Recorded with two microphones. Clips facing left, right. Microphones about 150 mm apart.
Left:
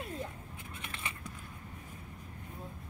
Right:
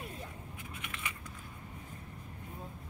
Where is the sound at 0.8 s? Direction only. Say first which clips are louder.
Left 1 dB; 30° left (ahead or behind).